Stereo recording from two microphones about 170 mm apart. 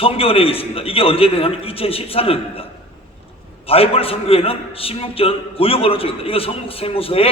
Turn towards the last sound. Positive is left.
turn(degrees=35)  # may be behind; listen again after turning